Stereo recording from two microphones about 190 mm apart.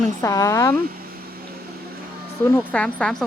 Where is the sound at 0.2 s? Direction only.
15° left (ahead or behind).